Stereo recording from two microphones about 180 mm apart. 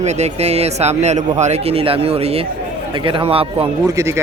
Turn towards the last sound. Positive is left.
turn(degrees=-15)  # may be behind; listen again after turning